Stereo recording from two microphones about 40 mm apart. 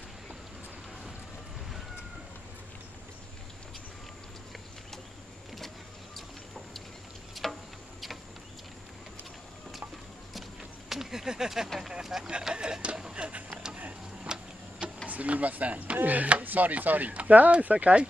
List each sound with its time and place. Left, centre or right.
7.4 s insect: centre
10.9 s a sound: centre
12.0 s speech: centre
12.5 s speech: right
14.3 s tick-tock: centre
15.0 s speech: right